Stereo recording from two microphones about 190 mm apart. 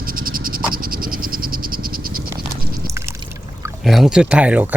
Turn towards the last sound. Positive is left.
turn(degrees=-10)  # may be behind; listen again after turning